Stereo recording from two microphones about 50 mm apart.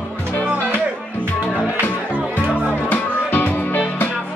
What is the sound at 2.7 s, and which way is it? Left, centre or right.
Music, left.